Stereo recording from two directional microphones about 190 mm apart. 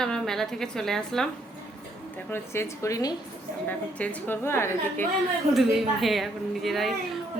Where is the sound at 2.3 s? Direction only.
15° left (ahead or behind).